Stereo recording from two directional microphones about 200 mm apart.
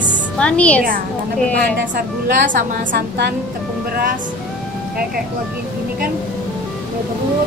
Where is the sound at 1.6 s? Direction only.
50° right (ahead or behind).